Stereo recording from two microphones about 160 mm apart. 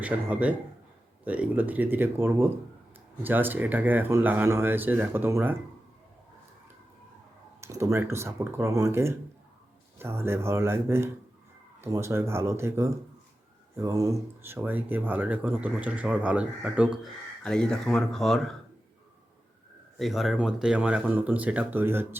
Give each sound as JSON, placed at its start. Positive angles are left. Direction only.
{"t": 0.0, "sound": "speech", "side_deg": -10}
{"t": 7.6, "sound": "speech", "side_deg": -20}
{"t": 20.0, "sound": "speech", "side_deg": 0}